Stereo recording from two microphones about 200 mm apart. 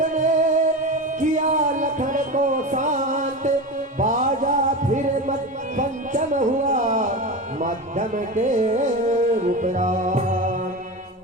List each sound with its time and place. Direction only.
0.0 s music: 40° right (ahead or behind)